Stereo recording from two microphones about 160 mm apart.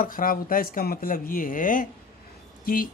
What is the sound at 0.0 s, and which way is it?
Speech, 60° left (ahead or behind).